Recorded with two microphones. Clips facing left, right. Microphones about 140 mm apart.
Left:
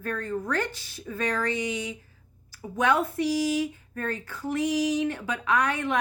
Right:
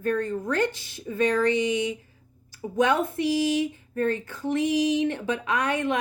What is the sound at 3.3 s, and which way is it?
Speech, 40° left (ahead or behind).